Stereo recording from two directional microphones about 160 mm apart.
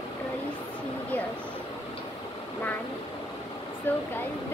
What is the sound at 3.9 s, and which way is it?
Speech, 10° left (ahead or behind).